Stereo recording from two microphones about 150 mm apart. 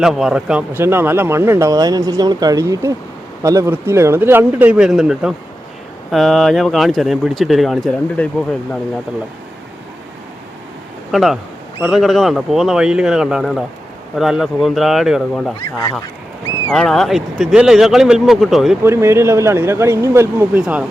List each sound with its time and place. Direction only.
0.0 s speech: 5° right (ahead or behind)
11.1 s speech: centre (ahead or behind)
16.7 s speech: 5° left (ahead or behind)
18.8 s speech: 20° right (ahead or behind)